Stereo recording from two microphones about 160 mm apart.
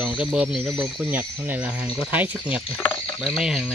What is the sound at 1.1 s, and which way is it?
Speech, 10° right (ahead or behind).